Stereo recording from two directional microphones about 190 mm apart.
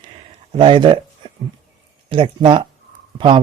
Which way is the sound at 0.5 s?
25° right (ahead or behind).